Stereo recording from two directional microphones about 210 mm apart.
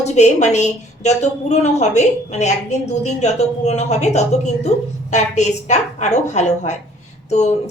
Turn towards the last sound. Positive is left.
turn(degrees=30)  # may be behind; listen again after turning